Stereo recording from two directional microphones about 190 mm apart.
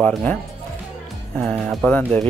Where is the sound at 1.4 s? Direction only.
5° left (ahead or behind).